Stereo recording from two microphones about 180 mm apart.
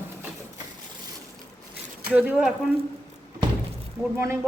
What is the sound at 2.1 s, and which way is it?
Speech, 5° right (ahead or behind).